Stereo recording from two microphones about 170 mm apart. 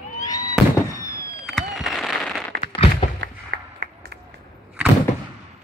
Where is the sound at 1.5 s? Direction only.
Centre (ahead or behind).